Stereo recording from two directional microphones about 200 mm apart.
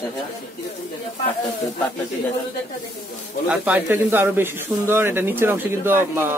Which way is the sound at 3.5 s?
5° right (ahead or behind).